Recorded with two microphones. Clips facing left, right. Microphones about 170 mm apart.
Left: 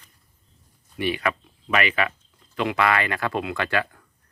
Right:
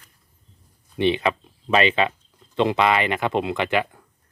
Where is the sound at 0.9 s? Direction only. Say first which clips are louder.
Right 5 dB; 25° right (ahead or behind).